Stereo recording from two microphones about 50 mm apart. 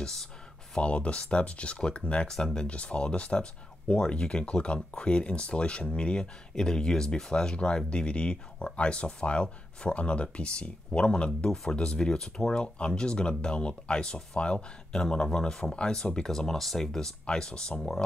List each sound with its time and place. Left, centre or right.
0.0 s speech: centre
0.7 s speech: left
2.2 s speech: centre
2.6 s speech: left; by 18.0 s centre